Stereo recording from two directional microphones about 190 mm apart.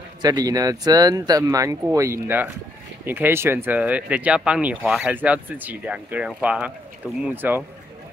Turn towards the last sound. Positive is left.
turn(degrees=-10)  # may be behind; listen again after turning